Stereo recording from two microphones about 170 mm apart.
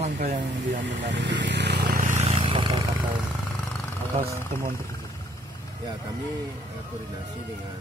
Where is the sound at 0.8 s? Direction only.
90° right.